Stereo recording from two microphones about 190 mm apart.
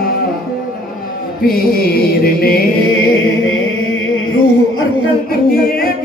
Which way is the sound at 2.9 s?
90° left.